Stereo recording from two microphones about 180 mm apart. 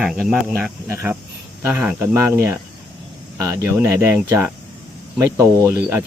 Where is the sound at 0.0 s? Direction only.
Centre (ahead or behind).